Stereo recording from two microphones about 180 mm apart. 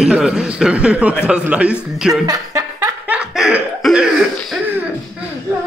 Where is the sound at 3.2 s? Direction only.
5° right (ahead or behind).